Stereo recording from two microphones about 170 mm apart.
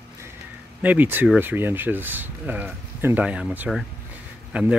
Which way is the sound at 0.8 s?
10° right (ahead or behind).